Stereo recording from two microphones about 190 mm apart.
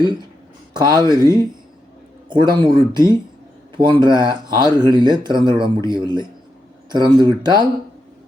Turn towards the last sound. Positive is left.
turn(degrees=-20)  # may be behind; listen again after turning